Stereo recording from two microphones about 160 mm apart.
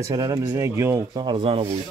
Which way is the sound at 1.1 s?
30° right (ahead or behind).